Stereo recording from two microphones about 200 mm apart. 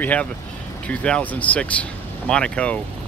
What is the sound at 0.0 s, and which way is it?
Speech, 10° left (ahead or behind).